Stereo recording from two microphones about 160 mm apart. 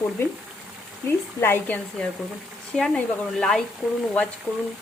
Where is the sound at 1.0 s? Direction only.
15° left (ahead or behind).